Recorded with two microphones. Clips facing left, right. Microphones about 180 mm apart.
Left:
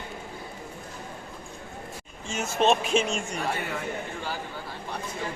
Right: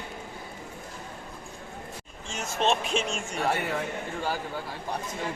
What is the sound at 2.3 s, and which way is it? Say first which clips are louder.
Speech: left 4 dB; 5° left (ahead or behind).